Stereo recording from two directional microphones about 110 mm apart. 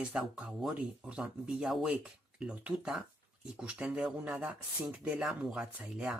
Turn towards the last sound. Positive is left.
turn(degrees=-10)  # may be behind; listen again after turning